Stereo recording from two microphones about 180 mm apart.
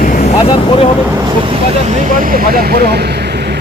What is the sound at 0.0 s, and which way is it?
Vehicle, 45° left (ahead or behind).